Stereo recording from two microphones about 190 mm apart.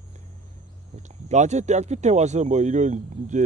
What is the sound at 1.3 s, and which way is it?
Speech, 40° right (ahead or behind).